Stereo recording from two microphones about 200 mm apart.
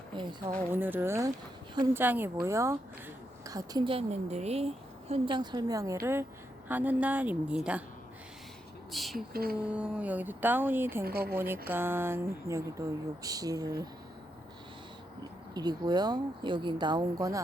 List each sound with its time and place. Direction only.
0.2 s a woman's voice: 20° right (ahead or behind)
0.7 s a woman's voice: 10° right (ahead or behind)
8.9 s speech: centre (ahead or behind)
9.1 s speech: 50° right (ahead or behind)
9.6 s speech: 5° right (ahead or behind)
11.0 s speech: 50° right (ahead or behind)
11.3 s speech: 10° right (ahead or behind)
15.5 s a woman's voice: 20° right (ahead or behind)